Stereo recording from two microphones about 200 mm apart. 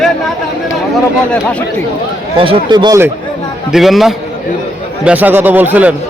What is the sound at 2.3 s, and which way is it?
Speech, 25° right (ahead or behind).